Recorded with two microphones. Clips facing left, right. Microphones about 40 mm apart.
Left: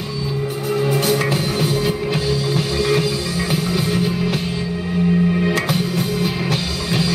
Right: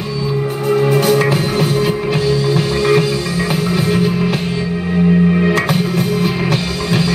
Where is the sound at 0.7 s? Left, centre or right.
Centre.